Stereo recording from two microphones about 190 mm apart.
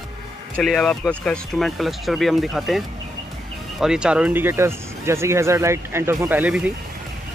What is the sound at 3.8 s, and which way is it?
Speech, 5° right (ahead or behind).